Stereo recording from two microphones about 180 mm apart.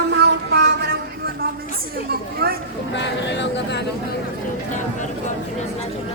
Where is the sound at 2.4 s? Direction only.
60° right (ahead or behind).